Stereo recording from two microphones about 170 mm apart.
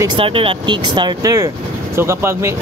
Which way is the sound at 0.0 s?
30° right (ahead or behind).